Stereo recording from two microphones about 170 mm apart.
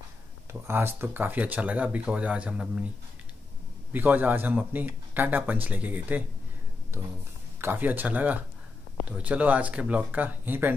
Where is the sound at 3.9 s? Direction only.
10° right (ahead or behind).